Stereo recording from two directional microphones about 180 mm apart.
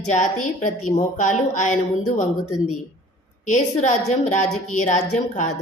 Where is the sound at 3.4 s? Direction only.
45° left (ahead or behind).